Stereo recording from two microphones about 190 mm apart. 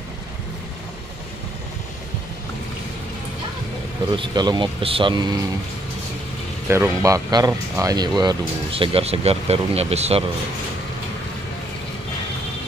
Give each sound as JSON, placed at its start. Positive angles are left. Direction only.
{"t": 4.1, "sound": "speech", "side_deg": -25}
{"t": 6.7, "sound": "speech", "side_deg": -15}